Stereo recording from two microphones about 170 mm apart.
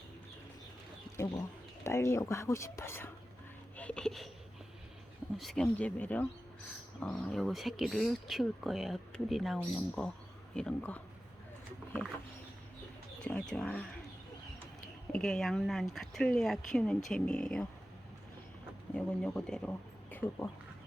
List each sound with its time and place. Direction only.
1.1 s speech: 15° left (ahead or behind)
5.4 s speech: centre (ahead or behind)
13.2 s speech: 5° left (ahead or behind)
15.1 s speech: 5° left (ahead or behind)
18.9 s speech: 5° left (ahead or behind)